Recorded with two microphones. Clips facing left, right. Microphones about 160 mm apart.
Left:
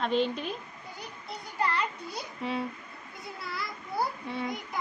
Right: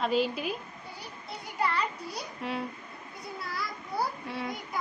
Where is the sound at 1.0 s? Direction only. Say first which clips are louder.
Left 2 dB; centre (ahead or behind).